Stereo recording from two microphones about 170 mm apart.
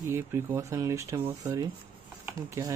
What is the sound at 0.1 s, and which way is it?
Speech, 15° right (ahead or behind).